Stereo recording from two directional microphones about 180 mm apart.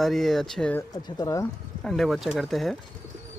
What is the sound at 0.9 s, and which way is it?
Speech, 20° left (ahead or behind).